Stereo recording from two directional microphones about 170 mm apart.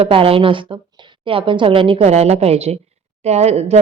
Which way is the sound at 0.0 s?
35° right (ahead or behind).